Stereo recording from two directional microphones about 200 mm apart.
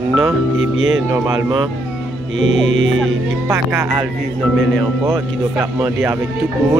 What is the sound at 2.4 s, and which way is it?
Music, 70° right (ahead or behind).